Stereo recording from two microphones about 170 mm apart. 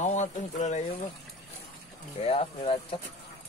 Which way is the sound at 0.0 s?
45° left (ahead or behind).